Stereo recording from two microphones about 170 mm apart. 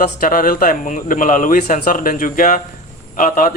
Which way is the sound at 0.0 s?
55° left (ahead or behind).